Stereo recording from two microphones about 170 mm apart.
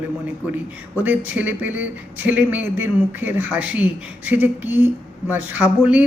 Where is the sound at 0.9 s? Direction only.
10° right (ahead or behind).